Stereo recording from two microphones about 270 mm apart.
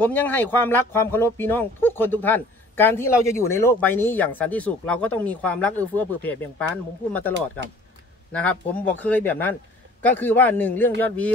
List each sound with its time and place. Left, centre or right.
0.0 s speech: centre
7.6 s speech: right
8.3 s speech: centre